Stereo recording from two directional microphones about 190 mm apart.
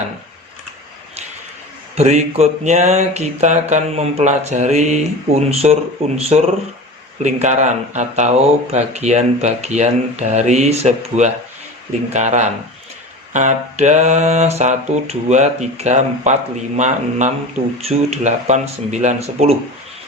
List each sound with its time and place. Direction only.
2.0 s mantra: 35° right (ahead or behind)